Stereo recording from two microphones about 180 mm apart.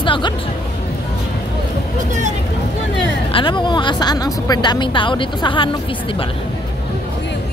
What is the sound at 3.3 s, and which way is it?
Speech, 25° left (ahead or behind).